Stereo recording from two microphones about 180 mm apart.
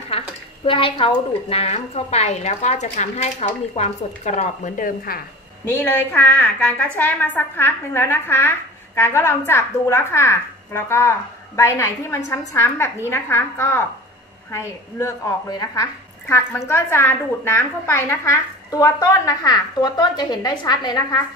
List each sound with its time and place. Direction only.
0.1 s a sound: 30° left (ahead or behind)
0.7 s a woman's voice: 30° left (ahead or behind); by 5.2 s 50° left (ahead or behind)
5.7 s a woman's voice: 10° left (ahead or behind)